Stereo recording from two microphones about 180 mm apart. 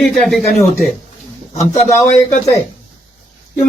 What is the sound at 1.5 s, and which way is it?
Speech, 35° left (ahead or behind).